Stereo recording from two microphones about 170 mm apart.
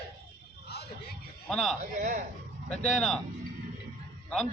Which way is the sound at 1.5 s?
Centre (ahead or behind).